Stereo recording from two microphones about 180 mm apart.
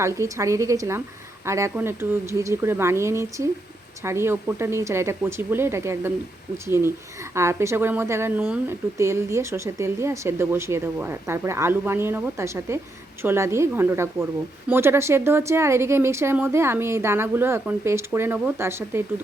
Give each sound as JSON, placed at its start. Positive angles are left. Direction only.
{"t": 0.0, "sound": "a woman's voice", "side_deg": -15}